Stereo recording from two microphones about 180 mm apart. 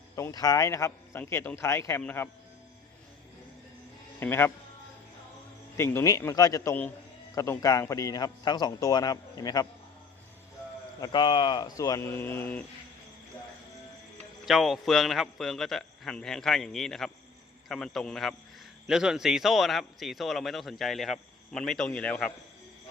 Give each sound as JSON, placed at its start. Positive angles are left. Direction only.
{"t": 0.2, "sound": "a man's voice", "side_deg": 20}
{"t": 4.2, "sound": "a man's voice", "side_deg": 15}
{"t": 5.7, "sound": "a man's voice", "side_deg": 15}
{"t": 11.0, "sound": "a man's voice", "side_deg": 25}
{"t": 14.4, "sound": "a man's voice", "side_deg": 0}